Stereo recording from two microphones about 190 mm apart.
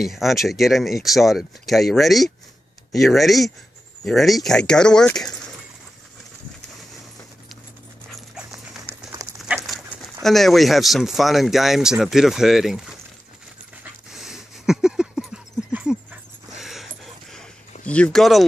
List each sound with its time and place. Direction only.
0.0 s speech: centre (ahead or behind)
8.1 s dog: centre (ahead or behind)
9.2 s dog: 20° right (ahead or behind)
9.7 s dog: centre (ahead or behind)
10.2 s speech: centre (ahead or behind)
14.1 s a sound: centre (ahead or behind)
17.8 s speech: 5° left (ahead or behind)